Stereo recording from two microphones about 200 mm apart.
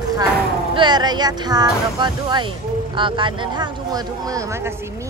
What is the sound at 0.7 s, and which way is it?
A woman's voice, 20° right (ahead or behind).